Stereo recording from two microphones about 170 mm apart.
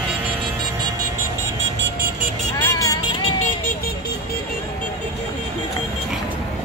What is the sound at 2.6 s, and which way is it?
Vehicle, 20° left (ahead or behind).